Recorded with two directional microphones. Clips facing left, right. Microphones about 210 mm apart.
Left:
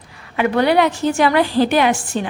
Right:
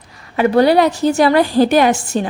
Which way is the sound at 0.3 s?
35° right (ahead or behind).